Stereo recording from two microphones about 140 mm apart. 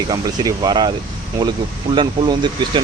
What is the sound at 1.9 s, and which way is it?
Speech, 35° right (ahead or behind).